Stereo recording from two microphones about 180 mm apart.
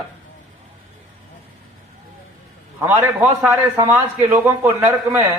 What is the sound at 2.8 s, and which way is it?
A man's voice, 10° right (ahead or behind).